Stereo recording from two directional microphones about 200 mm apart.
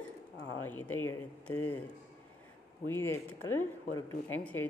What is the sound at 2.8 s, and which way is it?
Speech, 10° left (ahead or behind).